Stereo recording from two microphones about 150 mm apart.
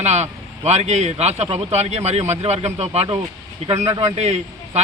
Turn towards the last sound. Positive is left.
turn(degrees=-45)  # may be behind; listen again after turning